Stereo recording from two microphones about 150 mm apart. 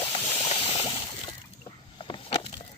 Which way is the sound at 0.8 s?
30° left (ahead or behind).